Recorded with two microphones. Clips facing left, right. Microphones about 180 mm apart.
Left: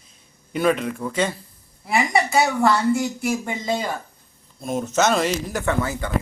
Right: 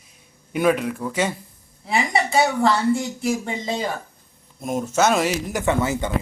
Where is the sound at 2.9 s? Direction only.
30° right (ahead or behind).